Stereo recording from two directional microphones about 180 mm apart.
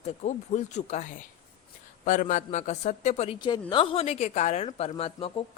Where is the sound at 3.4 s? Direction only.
25° left (ahead or behind).